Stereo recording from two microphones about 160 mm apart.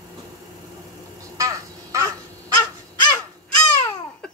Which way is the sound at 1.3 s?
20° right (ahead or behind).